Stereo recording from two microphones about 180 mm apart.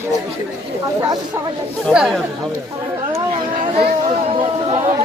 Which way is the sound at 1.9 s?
Centre (ahead or behind).